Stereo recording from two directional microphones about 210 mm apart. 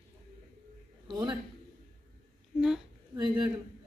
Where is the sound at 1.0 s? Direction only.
20° right (ahead or behind).